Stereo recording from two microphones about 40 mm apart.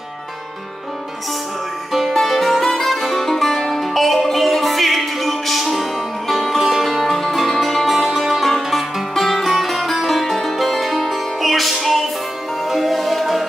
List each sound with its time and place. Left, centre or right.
1.9 s music: centre
8.0 s music: centre
8.3 s music: centre
9.1 s music: centre